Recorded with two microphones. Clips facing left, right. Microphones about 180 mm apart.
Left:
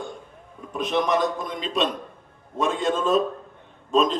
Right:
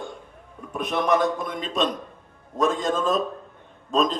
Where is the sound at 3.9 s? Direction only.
40° right (ahead or behind).